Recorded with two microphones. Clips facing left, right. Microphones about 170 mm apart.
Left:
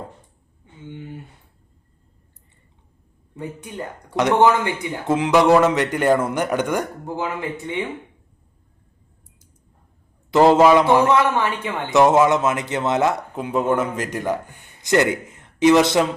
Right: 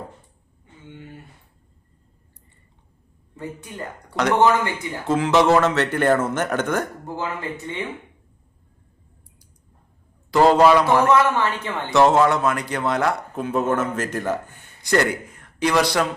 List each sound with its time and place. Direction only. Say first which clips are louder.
4.1 s speech: left 2 dB; 20° left (ahead or behind)
10.3 s a man's voice: left 2 dB; 15° left (ahead or behind)